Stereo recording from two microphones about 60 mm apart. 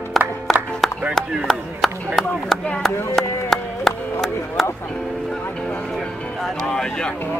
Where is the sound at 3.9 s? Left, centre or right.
Centre.